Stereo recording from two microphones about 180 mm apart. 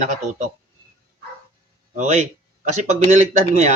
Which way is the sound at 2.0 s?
40° right (ahead or behind).